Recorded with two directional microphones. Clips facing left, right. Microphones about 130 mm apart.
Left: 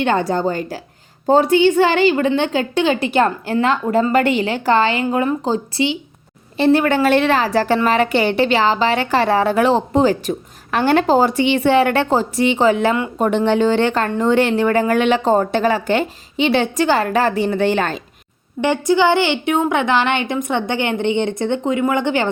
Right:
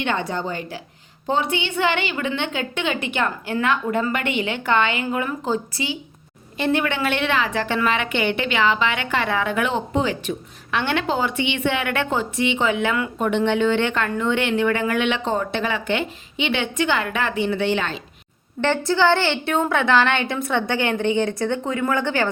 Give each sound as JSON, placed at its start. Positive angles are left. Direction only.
{"t": 0.0, "sound": "a woman's voice", "side_deg": 40}
{"t": 18.6, "sound": "a woman's voice", "side_deg": 15}